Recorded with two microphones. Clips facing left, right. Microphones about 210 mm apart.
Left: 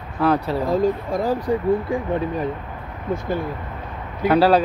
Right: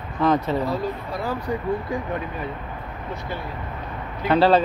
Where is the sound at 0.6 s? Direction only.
45° left (ahead or behind).